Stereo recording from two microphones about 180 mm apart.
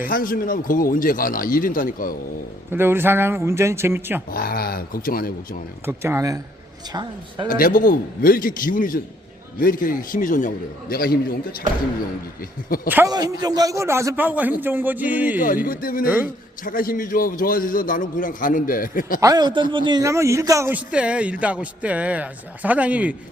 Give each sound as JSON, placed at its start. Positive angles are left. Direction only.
{"t": 0.0, "sound": "a man's voice", "side_deg": 50}
{"t": 2.7, "sound": "a man's voice", "side_deg": -10}
{"t": 4.3, "sound": "speech", "side_deg": 55}
{"t": 5.8, "sound": "a man's voice", "side_deg": -15}
{"t": 7.5, "sound": "a man's voice", "side_deg": 50}
{"t": 12.6, "sound": "a man's voice", "side_deg": 55}
{"t": 13.1, "sound": "a man's voice", "side_deg": -20}
{"t": 15.4, "sound": "a man's voice", "side_deg": 50}
{"t": 16.0, "sound": "a man's voice", "side_deg": -10}
{"t": 16.6, "sound": "a man's voice", "side_deg": 50}
{"t": 19.2, "sound": "a man's voice", "side_deg": -20}